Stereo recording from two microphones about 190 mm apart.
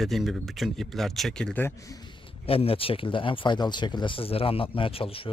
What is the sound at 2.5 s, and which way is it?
Speech, 30° left (ahead or behind).